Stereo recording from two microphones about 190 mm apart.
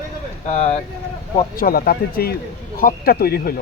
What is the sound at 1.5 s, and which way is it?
Speech, 50° left (ahead or behind).